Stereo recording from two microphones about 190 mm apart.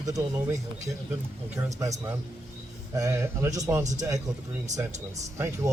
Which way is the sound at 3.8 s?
40° right (ahead or behind).